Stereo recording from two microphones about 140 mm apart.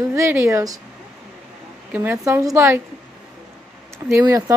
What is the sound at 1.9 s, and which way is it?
Speech, 15° right (ahead or behind).